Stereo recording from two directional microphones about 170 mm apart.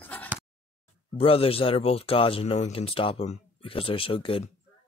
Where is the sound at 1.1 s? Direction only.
35° left (ahead or behind).